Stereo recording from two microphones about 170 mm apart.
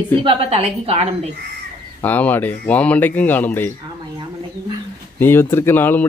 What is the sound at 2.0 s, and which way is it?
Speech, 10° left (ahead or behind).